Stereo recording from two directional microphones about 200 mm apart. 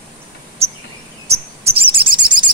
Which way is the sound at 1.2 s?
30° right (ahead or behind).